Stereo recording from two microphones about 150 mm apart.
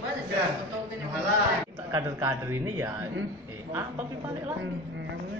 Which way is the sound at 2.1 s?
15° right (ahead or behind).